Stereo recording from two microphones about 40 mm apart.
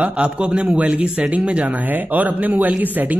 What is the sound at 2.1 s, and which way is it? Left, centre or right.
Speech, right.